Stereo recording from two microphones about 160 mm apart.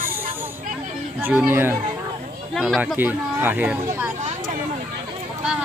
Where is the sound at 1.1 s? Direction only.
15° right (ahead or behind).